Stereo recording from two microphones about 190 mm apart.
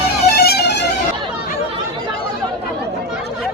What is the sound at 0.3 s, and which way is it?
Music, 55° left (ahead or behind).